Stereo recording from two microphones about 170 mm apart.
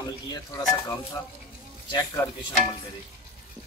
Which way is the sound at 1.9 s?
25° left (ahead or behind).